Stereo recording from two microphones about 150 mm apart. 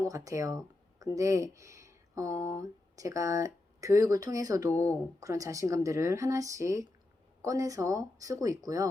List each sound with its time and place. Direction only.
0.0 s speech: 20° right (ahead or behind)